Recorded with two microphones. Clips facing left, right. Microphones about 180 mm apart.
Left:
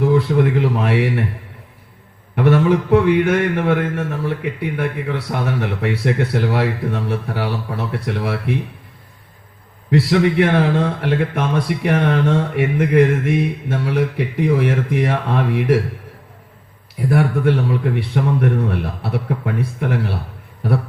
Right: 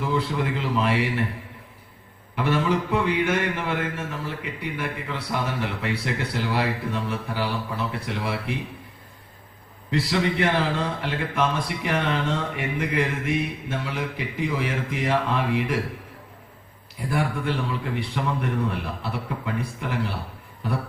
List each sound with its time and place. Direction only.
0.0 s a man's voice: 55° left (ahead or behind)
2.3 s a man's voice: 60° left (ahead or behind)
9.9 s a man's voice: 60° left (ahead or behind)
17.1 s a man's voice: 55° left (ahead or behind)